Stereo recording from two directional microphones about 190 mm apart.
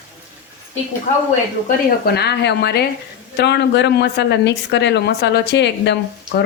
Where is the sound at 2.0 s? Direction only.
60° left (ahead or behind).